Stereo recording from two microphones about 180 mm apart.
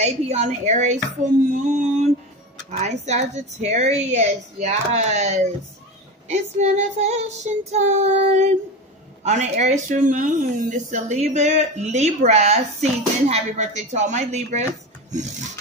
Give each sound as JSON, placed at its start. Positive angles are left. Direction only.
{"t": 0.0, "sound": "a woman's voice", "side_deg": -40}